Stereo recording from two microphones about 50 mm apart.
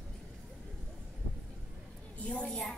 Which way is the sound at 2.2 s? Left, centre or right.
Left.